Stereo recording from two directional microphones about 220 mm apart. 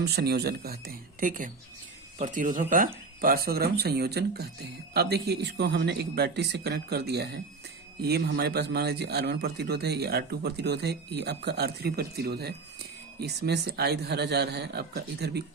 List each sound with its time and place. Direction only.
0.0 s speech: 45° right (ahead or behind)